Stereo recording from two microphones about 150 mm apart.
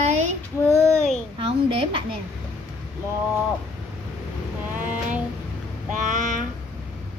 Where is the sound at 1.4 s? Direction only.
40° right (ahead or behind).